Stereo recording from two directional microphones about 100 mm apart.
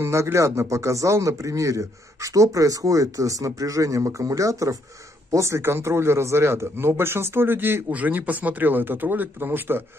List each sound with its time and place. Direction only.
0.0 s speech: 30° right (ahead or behind)